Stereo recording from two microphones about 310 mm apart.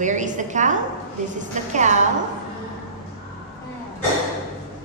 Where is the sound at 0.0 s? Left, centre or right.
Right.